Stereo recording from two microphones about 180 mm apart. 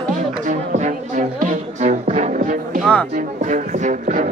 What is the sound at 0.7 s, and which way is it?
Music, 45° right (ahead or behind).